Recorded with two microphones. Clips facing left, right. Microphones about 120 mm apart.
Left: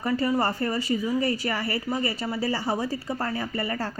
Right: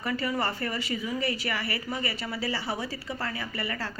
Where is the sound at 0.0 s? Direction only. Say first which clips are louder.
Left 5 dB; 35° left (ahead or behind).